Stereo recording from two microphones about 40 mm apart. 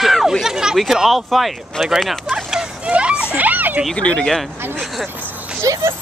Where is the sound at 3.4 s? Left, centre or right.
Right.